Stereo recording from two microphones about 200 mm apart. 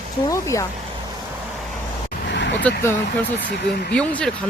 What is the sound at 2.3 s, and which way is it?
Vehicle, 60° left (ahead or behind).